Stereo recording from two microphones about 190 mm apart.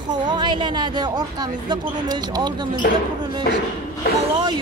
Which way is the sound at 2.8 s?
50° left (ahead or behind).